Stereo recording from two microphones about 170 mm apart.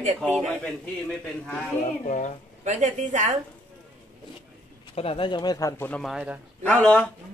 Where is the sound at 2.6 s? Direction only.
45° right (ahead or behind).